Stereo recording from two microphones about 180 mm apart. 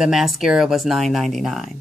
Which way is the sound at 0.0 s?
Centre (ahead or behind).